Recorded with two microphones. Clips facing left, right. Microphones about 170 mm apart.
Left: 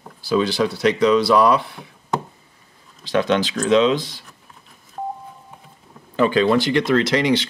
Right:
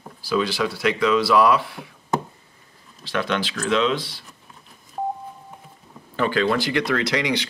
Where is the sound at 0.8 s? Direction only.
40° left (ahead or behind).